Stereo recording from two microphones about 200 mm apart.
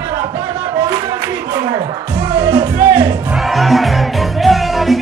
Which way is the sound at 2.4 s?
20° right (ahead or behind).